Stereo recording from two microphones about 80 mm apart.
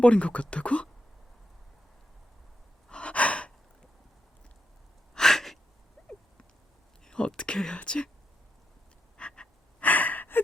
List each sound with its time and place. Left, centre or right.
0.0 s speech: centre
2.9 s gasp: centre
5.1 s a sound: centre
7.0 s speech: centre
9.1 s frog: centre
9.8 s gasp: left